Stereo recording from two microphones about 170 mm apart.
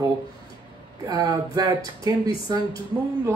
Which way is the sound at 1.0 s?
20° right (ahead or behind).